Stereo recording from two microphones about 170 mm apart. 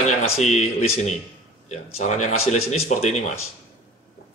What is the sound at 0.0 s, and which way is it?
Speech, 40° left (ahead or behind).